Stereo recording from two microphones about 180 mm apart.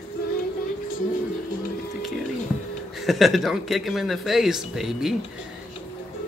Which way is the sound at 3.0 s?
Centre (ahead or behind).